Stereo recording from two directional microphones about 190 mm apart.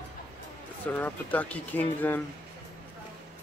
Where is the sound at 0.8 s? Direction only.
10° left (ahead or behind).